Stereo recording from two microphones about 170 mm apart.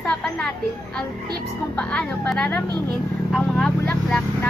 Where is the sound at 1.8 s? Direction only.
5° left (ahead or behind).